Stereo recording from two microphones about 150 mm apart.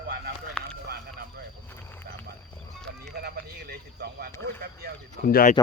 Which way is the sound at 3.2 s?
90° right.